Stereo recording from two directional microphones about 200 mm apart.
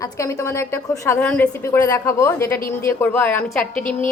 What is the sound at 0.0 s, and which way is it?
A woman's voice, 15° left (ahead or behind).